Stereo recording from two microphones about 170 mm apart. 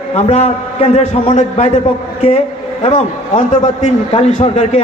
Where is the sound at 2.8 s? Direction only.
35° left (ahead or behind).